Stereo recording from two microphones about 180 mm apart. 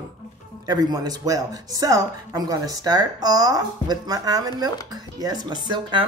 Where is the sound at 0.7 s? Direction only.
20° right (ahead or behind).